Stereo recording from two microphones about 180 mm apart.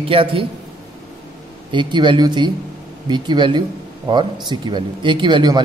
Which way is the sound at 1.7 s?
25° right (ahead or behind).